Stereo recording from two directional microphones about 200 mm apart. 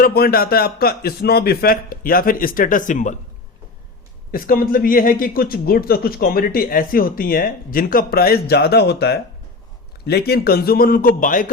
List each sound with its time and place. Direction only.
0.0 s speech: 50° left (ahead or behind)
4.3 s speech: 45° left (ahead or behind)